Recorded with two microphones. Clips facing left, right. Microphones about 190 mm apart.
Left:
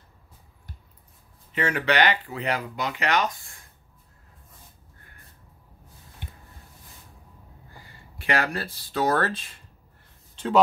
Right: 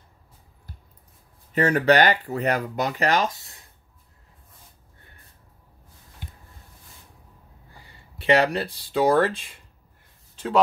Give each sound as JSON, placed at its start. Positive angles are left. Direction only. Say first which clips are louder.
{"t": 1.5, "sound": "speech", "louder": "right 6 dB", "side_deg": -40}
{"t": 8.3, "sound": "speech", "louder": "right 6 dB", "side_deg": -20}